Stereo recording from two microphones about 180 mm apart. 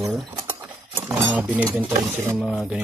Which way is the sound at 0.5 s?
15° right (ahead or behind).